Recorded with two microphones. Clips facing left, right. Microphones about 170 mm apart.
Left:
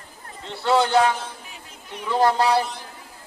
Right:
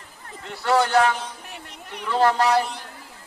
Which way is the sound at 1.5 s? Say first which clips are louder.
Right 2 dB; 70° right (ahead or behind).